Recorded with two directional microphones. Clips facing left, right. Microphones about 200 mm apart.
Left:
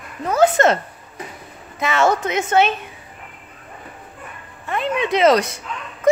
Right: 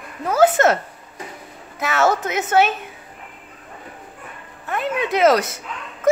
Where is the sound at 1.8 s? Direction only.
5° right (ahead or behind).